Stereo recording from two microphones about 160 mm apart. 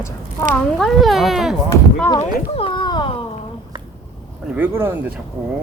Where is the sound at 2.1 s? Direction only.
30° left (ahead or behind).